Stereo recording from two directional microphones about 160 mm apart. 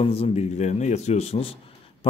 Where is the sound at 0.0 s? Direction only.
40° left (ahead or behind).